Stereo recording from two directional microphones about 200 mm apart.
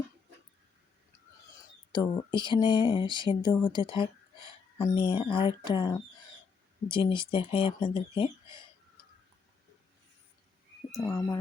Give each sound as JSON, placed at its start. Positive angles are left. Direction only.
{"t": 2.0, "sound": "speech", "side_deg": 25}
{"t": 10.9, "sound": "speech", "side_deg": 15}